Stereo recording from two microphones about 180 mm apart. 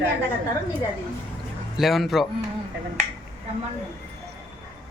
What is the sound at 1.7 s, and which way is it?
Speech, centre (ahead or behind).